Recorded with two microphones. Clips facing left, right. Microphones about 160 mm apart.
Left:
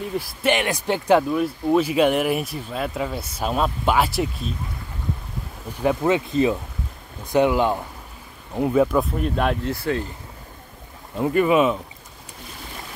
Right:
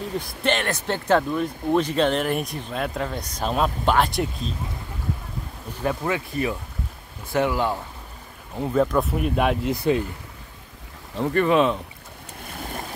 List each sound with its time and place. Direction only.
0.2 s speech: 10° left (ahead or behind)
5.8 s speech: 20° left (ahead or behind)
8.7 s speech: 5° left (ahead or behind)
9.1 s speech: 10° right (ahead or behind)
9.7 s speech: 15° right (ahead or behind)
11.1 s speech: 5° left (ahead or behind)